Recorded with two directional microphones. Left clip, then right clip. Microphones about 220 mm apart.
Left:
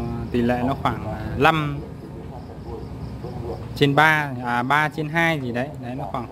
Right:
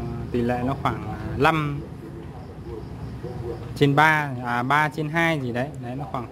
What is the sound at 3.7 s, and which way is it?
Speech, centre (ahead or behind).